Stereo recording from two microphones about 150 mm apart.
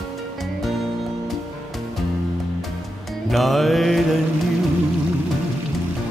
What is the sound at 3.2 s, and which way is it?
Music, centre (ahead or behind).